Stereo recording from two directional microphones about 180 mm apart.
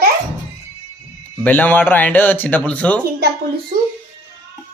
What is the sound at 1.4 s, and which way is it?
Speech, 10° left (ahead or behind).